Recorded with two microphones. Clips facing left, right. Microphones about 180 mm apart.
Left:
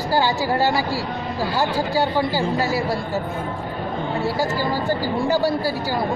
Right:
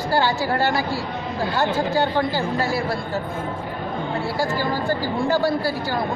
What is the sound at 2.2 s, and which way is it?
Speech, 10° left (ahead or behind).